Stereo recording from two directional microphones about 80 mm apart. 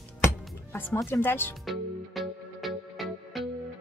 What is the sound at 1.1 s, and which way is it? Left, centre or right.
Speech, left.